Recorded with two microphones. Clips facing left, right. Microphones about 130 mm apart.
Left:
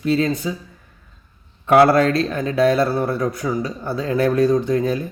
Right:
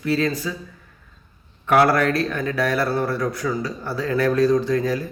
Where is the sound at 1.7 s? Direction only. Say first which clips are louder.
Left 4 dB; 25° left (ahead or behind).